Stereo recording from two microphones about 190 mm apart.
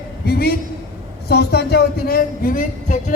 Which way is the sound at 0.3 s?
55° left (ahead or behind).